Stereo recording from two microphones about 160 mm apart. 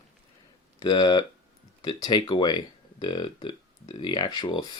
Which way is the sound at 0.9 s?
25° left (ahead or behind).